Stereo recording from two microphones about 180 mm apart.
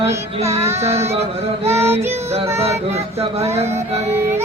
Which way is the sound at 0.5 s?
15° right (ahead or behind).